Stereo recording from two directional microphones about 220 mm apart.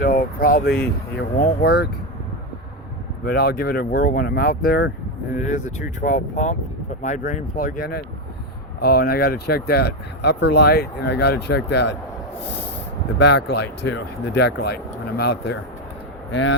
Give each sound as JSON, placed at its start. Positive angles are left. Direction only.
{"t": 0.0, "sound": "speech", "side_deg": 40}
{"t": 3.2, "sound": "speech", "side_deg": 45}
{"t": 5.3, "sound": "speech", "side_deg": 35}
{"t": 13.1, "sound": "speech", "side_deg": 50}
{"t": 16.3, "sound": "speech", "side_deg": 60}